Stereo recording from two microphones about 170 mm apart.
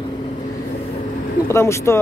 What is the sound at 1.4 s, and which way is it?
Speech, 15° left (ahead or behind).